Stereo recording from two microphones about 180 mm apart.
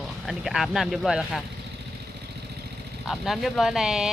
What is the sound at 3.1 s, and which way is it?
Speech, centre (ahead or behind).